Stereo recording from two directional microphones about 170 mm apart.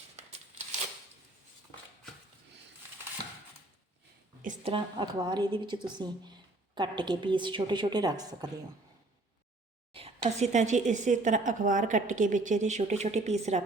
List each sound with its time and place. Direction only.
4.6 s a woman's voice: 30° right (ahead or behind)
9.9 s a woman's voice: 40° right (ahead or behind)